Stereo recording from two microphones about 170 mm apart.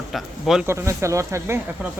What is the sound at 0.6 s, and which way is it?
Speech, 15° right (ahead or behind).